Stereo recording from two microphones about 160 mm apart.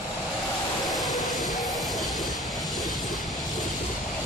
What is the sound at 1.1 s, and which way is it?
Music, 25° left (ahead or behind).